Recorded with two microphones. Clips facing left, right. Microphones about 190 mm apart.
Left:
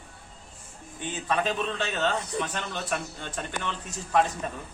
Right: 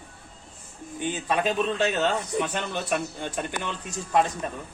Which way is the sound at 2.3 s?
15° right (ahead or behind).